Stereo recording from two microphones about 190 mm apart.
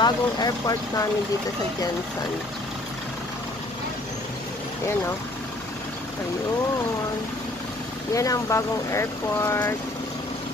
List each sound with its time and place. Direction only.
0.0 s speech: 20° left (ahead or behind)
8.1 s speech: 15° left (ahead or behind)